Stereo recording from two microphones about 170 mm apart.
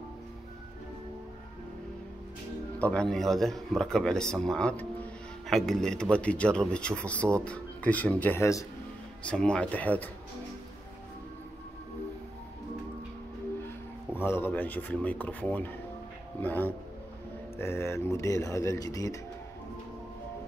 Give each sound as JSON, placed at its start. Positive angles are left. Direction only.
{"t": 2.8, "sound": "speech", "side_deg": 5}
{"t": 9.2, "sound": "speech", "side_deg": 5}
{"t": 14.1, "sound": "speech", "side_deg": 15}